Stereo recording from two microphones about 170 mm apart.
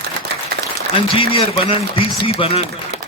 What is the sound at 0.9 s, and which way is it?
A man's voice, 30° left (ahead or behind).